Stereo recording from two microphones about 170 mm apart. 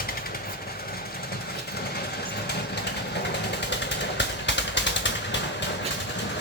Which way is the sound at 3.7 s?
90° left.